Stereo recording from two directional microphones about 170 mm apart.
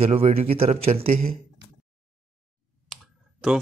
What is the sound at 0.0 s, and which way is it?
Speech, 35° right (ahead or behind).